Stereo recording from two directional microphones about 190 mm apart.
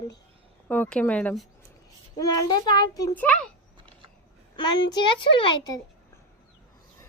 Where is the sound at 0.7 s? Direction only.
5° left (ahead or behind).